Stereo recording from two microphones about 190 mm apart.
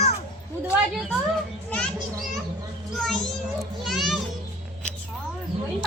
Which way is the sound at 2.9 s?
Centre (ahead or behind).